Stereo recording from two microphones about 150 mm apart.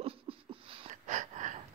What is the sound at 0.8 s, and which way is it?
Wheeze, 55° right (ahead or behind).